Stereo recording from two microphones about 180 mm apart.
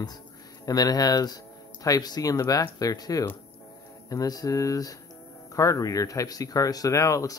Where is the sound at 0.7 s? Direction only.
20° left (ahead or behind).